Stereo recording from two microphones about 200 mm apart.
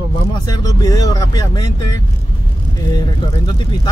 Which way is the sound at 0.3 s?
20° left (ahead or behind).